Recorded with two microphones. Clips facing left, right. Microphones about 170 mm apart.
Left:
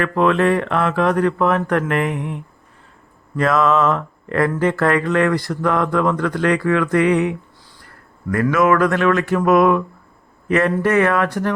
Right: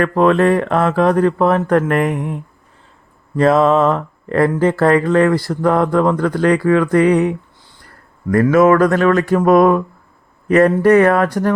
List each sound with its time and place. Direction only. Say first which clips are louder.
0.0 s speech: right 4 dB; 40° right (ahead or behind)
3.3 s speech: right 4 dB; 30° right (ahead or behind)